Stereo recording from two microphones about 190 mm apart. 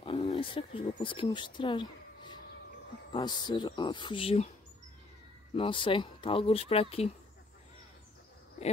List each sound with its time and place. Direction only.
0.0 s speech: 30° left (ahead or behind)
5.6 s speech: 25° left (ahead or behind)